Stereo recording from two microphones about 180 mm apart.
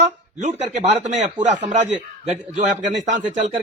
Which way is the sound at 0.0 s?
35° right (ahead or behind).